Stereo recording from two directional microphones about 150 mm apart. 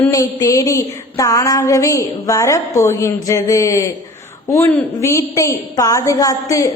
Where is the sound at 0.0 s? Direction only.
20° left (ahead or behind).